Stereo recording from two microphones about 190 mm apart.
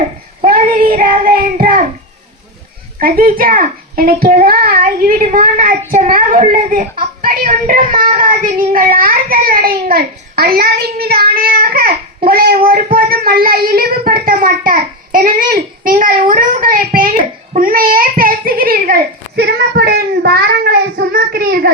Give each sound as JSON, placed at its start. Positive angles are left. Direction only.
{"t": 0.4, "sound": "child singing", "side_deg": -50}
{"t": 3.0, "sound": "a woman's voice", "side_deg": -50}
{"t": 19.4, "sound": "child singing", "side_deg": -55}